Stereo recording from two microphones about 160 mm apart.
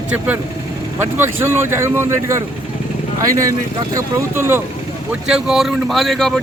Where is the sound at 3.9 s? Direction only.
20° right (ahead or behind).